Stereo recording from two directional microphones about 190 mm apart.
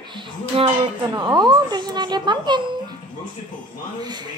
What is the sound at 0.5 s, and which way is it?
A woman's voice, 30° right (ahead or behind).